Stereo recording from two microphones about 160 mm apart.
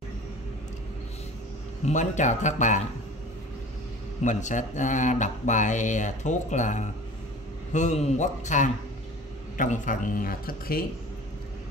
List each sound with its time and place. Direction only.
1.9 s speech: 50° left (ahead or behind)
4.2 s speech: 50° left (ahead or behind); by 10.9 s 65° left (ahead or behind)